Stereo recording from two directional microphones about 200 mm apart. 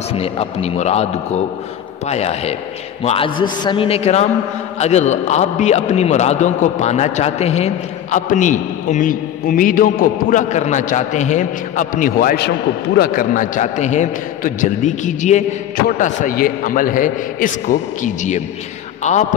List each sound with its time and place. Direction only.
0.1 s a man's voice: 30° left (ahead or behind)